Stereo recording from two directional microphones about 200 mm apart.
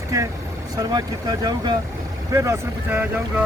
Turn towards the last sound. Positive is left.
turn(degrees=-5)  # may be behind; listen again after turning